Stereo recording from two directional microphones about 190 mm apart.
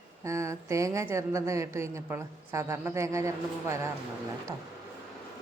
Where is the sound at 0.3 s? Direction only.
15° right (ahead or behind).